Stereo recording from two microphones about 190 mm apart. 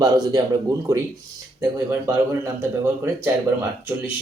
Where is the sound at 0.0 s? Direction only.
20° right (ahead or behind).